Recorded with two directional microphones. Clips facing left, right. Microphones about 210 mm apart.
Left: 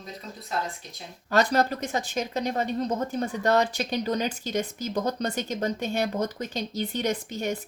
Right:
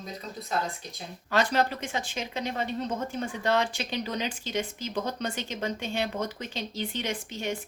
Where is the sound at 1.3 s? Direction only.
40° left (ahead or behind).